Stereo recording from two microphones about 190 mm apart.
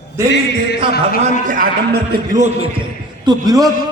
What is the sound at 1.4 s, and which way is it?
A man's voice, 45° right (ahead or behind).